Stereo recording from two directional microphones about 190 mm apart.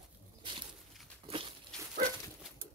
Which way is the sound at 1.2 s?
30° right (ahead or behind).